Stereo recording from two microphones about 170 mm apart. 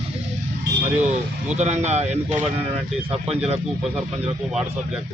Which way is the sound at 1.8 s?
40° right (ahead or behind).